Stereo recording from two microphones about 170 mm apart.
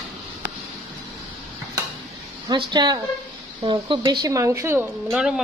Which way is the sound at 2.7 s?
25° right (ahead or behind).